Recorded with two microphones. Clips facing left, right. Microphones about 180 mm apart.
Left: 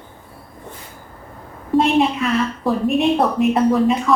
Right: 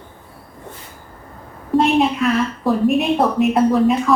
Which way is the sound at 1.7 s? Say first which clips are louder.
Even; centre (ahead or behind).